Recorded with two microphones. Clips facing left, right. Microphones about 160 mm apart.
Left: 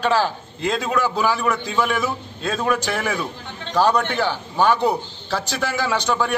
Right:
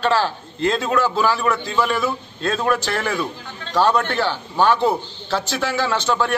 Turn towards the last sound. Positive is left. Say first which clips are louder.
# right 1 dB
turn(degrees=10)  # may be behind; listen again after turning